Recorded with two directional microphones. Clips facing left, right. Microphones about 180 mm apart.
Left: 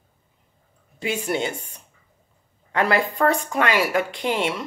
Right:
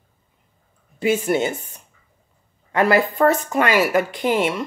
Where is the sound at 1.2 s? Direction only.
Centre (ahead or behind).